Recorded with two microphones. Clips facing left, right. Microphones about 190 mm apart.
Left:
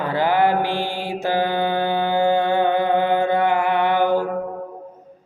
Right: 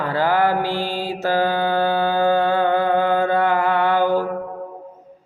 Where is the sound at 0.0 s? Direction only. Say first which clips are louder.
Even; 20° left (ahead or behind).